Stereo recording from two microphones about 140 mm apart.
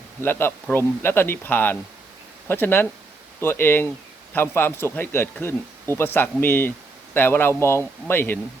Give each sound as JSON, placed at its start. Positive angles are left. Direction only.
{"t": 0.2, "sound": "speech", "side_deg": 15}